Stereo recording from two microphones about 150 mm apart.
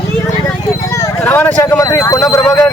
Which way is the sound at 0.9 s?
15° left (ahead or behind).